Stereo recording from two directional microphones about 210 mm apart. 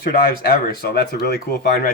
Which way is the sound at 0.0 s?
45° left (ahead or behind).